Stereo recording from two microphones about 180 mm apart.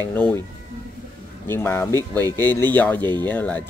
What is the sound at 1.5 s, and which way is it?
Speech, 10° left (ahead or behind).